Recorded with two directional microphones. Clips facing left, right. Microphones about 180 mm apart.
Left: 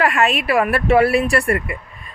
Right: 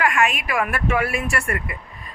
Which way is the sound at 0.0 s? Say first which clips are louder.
Left 3 dB; 35° left (ahead or behind).